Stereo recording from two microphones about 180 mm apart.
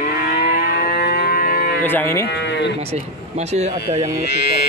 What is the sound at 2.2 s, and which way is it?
Speech, 70° left (ahead or behind).